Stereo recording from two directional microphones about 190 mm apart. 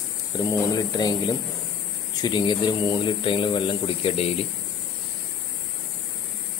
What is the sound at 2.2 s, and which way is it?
Speech, 25° left (ahead or behind).